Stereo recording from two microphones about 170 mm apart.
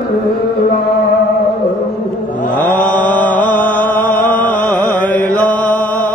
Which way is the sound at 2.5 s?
10° left (ahead or behind).